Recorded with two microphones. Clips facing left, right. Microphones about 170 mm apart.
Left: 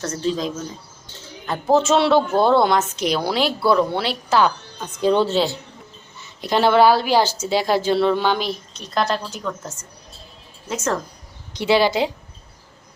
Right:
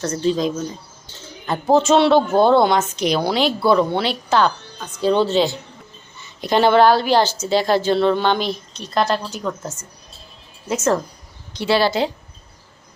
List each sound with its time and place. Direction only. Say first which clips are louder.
0.0 s a woman's voice: right 4 dB; centre (ahead or behind)
1.7 s a woman's voice: right 2 dB; centre (ahead or behind)
4.8 s a woman's voice: even; 15° left (ahead or behind); by 9.4 s centre (ahead or behind)
10.7 s a woman's voice: right 5 dB; 5° right (ahead or behind)
11.5 s a woman's voice: even; 15° left (ahead or behind)